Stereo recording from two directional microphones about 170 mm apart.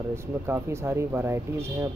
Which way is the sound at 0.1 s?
15° right (ahead or behind).